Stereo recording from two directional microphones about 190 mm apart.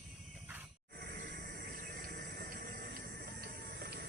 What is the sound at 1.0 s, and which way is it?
Water, 55° right (ahead or behind).